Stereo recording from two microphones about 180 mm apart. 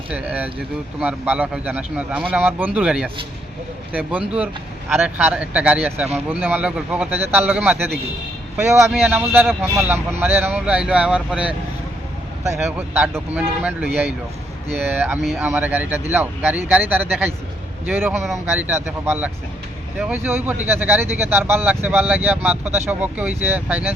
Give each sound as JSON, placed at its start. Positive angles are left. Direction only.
{"t": 0.1, "sound": "speech", "side_deg": -10}